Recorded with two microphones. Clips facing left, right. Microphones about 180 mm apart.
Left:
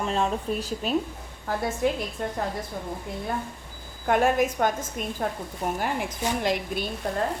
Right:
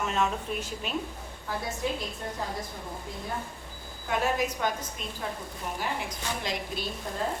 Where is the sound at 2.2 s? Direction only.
65° left (ahead or behind).